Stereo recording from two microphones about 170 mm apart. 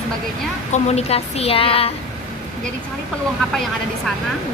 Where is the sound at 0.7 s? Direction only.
40° left (ahead or behind).